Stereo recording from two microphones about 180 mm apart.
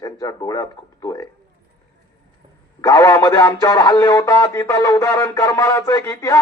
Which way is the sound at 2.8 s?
20° left (ahead or behind).